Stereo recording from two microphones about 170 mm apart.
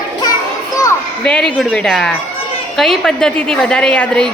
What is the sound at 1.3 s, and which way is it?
A woman's voice, 5° left (ahead or behind).